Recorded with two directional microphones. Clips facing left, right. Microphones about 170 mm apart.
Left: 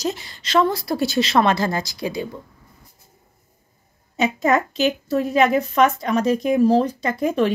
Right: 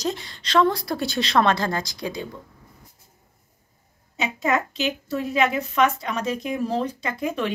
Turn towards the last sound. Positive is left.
turn(degrees=40)  # may be behind; listen again after turning